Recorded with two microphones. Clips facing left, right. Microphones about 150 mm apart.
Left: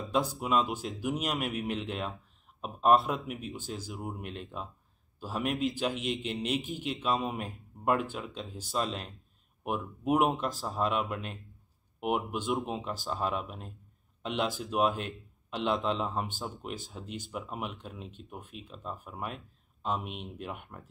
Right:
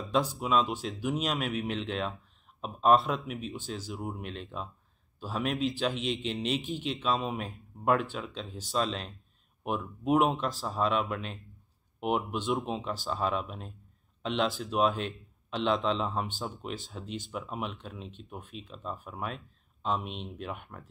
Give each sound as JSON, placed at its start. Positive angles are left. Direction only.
{"t": 0.1, "sound": "speech", "side_deg": 10}